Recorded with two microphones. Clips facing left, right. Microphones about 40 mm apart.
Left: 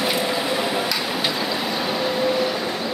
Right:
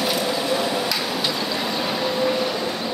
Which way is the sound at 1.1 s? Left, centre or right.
Centre.